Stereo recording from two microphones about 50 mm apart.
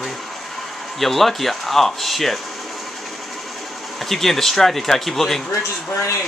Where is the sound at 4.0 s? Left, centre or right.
Centre.